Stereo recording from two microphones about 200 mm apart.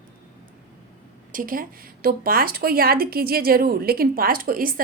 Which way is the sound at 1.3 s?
45° right (ahead or behind).